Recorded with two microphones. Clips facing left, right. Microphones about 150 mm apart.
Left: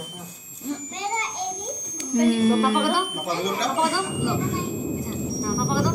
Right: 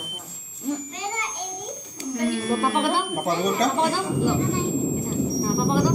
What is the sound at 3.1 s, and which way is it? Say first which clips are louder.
Speech: right 3 dB; 45° right (ahead or behind).